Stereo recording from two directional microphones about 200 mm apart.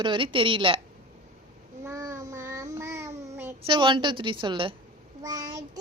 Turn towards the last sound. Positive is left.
turn(degrees=-15)  # may be behind; listen again after turning